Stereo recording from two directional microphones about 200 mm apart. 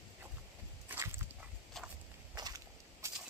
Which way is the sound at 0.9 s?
10° right (ahead or behind).